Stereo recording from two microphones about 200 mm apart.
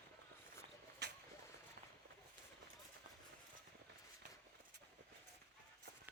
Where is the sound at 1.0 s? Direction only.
55° right (ahead or behind).